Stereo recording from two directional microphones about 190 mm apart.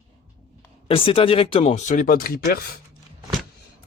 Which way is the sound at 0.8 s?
30° left (ahead or behind).